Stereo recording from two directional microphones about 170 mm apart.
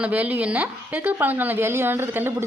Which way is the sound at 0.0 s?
10° right (ahead or behind).